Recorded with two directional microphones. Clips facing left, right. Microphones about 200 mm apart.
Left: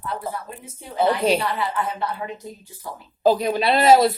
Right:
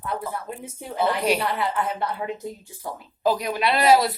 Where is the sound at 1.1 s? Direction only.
30° left (ahead or behind).